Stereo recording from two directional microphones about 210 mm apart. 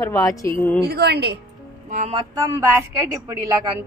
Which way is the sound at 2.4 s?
15° right (ahead or behind).